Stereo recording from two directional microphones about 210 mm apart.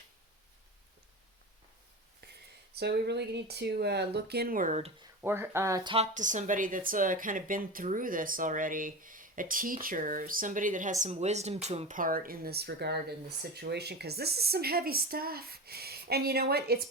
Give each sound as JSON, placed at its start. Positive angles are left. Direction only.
{"t": 2.2, "sound": "a sound", "side_deg": -50}
{"t": 2.7, "sound": "speech", "side_deg": -50}
{"t": 5.2, "sound": "speech", "side_deg": -10}
{"t": 6.1, "sound": "speech", "side_deg": -35}